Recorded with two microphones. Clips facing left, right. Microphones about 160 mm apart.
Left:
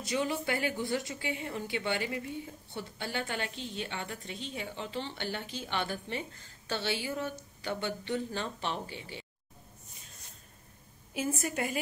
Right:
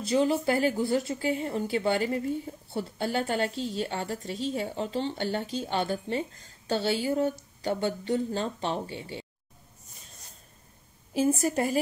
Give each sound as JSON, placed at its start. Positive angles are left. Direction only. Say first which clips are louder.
{"t": 0.0, "sound": "a woman's voice", "louder": "right 8 dB", "side_deg": -35}
{"t": 11.4, "sound": "a woman's voice", "louder": "right 7 dB", "side_deg": -35}